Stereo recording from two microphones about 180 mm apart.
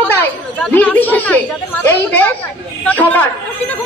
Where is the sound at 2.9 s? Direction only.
10° left (ahead or behind).